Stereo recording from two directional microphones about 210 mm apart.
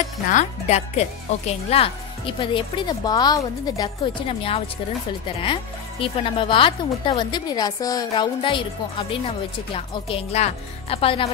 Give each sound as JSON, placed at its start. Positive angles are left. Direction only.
{"t": 0.3, "sound": "speech", "side_deg": 35}